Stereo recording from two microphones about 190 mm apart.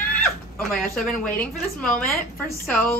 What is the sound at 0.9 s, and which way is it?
Speech, 5° left (ahead or behind).